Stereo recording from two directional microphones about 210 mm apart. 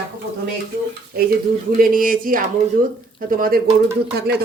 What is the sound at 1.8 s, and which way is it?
Speech, 40° right (ahead or behind).